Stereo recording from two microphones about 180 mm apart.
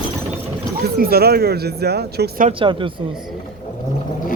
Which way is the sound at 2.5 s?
30° right (ahead or behind).